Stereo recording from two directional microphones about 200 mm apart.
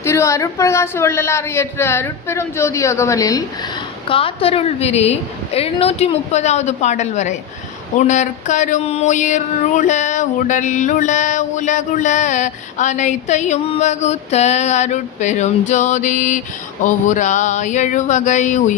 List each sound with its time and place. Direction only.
0.0 s a man's voice: 15° left (ahead or behind)
4.1 s a woman's voice: 30° left (ahead or behind)
5.5 s a sound: 30° left (ahead or behind)